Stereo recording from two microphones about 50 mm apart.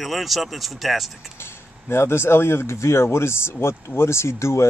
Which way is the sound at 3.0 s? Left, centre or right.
Left.